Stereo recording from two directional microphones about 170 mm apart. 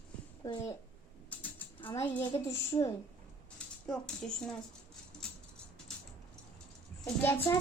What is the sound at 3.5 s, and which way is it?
Speech, 5° left (ahead or behind).